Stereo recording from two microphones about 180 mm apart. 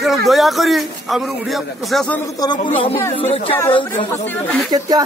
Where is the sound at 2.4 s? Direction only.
25° left (ahead or behind).